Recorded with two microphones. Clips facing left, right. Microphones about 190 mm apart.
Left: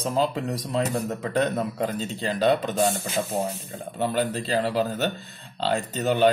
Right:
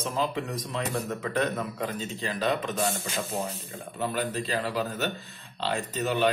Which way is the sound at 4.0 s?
35° left (ahead or behind).